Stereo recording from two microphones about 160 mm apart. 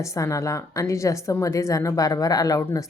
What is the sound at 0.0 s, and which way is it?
A woman's voice, 20° left (ahead or behind).